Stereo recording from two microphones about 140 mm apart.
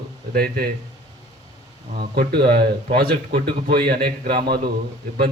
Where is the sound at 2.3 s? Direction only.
90° right.